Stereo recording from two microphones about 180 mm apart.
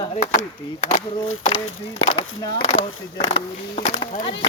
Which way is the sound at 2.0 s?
30° left (ahead or behind).